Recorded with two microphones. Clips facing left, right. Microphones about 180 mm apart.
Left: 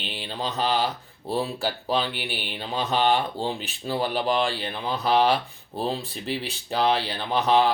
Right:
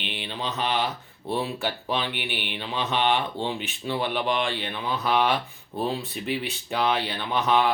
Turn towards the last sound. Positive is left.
turn(degrees=35)  # may be behind; listen again after turning